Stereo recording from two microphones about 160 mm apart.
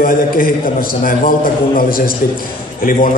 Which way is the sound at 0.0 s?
60° left (ahead or behind).